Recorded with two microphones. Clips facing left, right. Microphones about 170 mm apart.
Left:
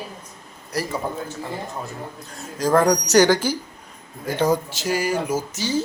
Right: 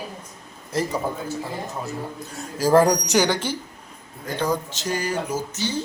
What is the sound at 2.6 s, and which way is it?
Speech, 5° right (ahead or behind).